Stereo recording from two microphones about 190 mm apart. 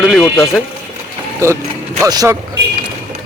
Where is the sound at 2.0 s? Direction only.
20° right (ahead or behind).